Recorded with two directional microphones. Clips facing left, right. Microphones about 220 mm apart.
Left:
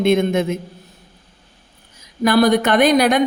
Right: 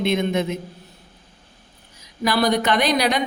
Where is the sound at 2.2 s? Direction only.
50° left (ahead or behind).